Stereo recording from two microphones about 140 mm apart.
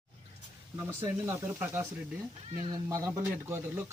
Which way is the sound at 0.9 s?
15° right (ahead or behind).